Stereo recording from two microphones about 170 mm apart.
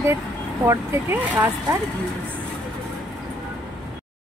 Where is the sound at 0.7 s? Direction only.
15° right (ahead or behind).